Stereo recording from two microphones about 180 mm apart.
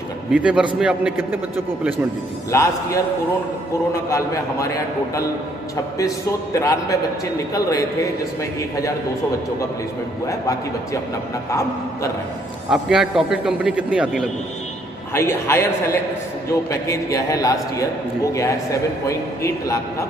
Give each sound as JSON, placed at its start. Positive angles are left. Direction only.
{"t": 0.3, "sound": "a man's voice", "side_deg": -5}
{"t": 2.5, "sound": "a man's voice", "side_deg": 15}
{"t": 4.1, "sound": "a man's voice", "side_deg": 15}
{"t": 10.2, "sound": "a man's voice", "side_deg": 15}
{"t": 12.6, "sound": "a man's voice", "side_deg": -5}
{"t": 15.1, "sound": "a man's voice", "side_deg": 15}